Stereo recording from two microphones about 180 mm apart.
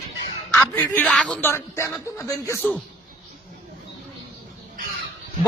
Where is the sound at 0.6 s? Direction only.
10° left (ahead or behind).